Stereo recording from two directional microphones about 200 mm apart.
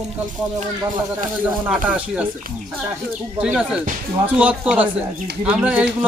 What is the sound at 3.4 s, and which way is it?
A man's voice, 5° right (ahead or behind).